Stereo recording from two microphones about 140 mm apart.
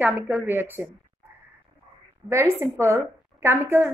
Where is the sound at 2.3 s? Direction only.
20° right (ahead or behind).